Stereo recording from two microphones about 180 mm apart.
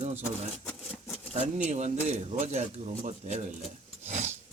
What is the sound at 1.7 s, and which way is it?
Speech, 40° right (ahead or behind).